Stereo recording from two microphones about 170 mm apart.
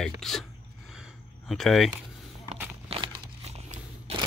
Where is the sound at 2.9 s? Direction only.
35° right (ahead or behind).